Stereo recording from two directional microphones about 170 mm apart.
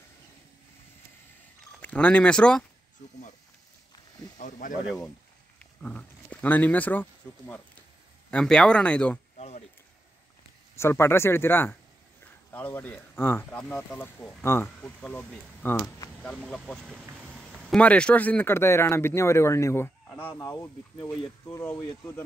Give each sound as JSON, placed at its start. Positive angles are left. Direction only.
{"t": 1.8, "sound": "speech", "side_deg": 10}
{"t": 4.4, "sound": "speech", "side_deg": 50}
{"t": 4.8, "sound": "speech", "side_deg": 0}
{"t": 10.8, "sound": "speech", "side_deg": 15}
{"t": 16.9, "sound": "a sound", "side_deg": -5}
{"t": 17.7, "sound": "speech", "side_deg": 5}